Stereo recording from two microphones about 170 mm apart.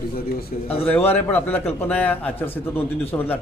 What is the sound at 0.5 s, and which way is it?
Speech, 50° left (ahead or behind).